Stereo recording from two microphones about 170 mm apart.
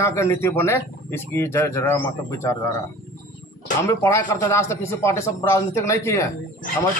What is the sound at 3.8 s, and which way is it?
A man's voice, 15° left (ahead or behind).